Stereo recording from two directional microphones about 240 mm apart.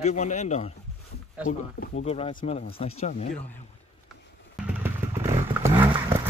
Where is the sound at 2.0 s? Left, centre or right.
Left.